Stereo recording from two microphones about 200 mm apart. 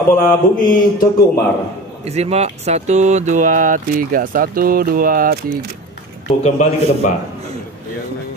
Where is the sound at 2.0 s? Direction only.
30° right (ahead or behind); by 5.7 s 50° right (ahead or behind).